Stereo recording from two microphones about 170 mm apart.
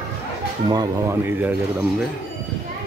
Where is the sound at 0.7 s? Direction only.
20° right (ahead or behind).